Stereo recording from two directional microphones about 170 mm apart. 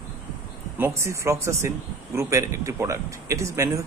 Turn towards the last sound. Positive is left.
turn(degrees=-15)  # may be behind; listen again after turning